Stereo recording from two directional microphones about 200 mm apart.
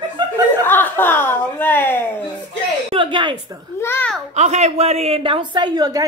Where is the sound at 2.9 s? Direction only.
25° right (ahead or behind).